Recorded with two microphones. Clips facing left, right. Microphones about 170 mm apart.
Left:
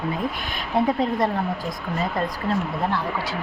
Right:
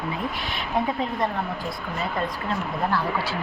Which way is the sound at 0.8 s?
40° left (ahead or behind).